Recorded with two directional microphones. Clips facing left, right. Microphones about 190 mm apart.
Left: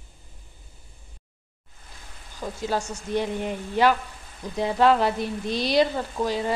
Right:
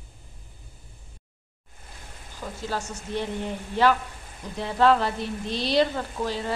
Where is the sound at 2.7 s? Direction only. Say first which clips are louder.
Left 4 dB; 15° left (ahead or behind).